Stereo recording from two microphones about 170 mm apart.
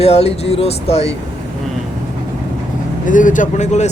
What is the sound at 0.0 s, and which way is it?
Speech, 35° left (ahead or behind).